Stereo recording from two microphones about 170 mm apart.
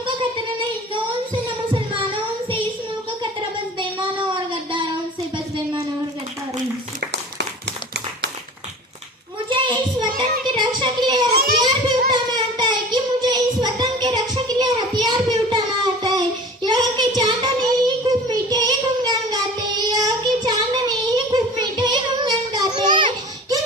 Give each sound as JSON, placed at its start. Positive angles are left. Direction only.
{"t": 1.3, "sound": "music", "side_deg": -30}
{"t": 9.5, "sound": "child singing", "side_deg": -30}
{"t": 10.2, "sound": "music", "side_deg": -25}
{"t": 11.6, "sound": "child singing", "side_deg": -25}